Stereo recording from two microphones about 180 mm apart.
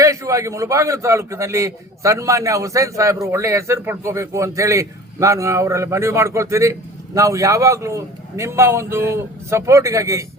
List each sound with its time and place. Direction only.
0.0 s a man's voice: 20° right (ahead or behind)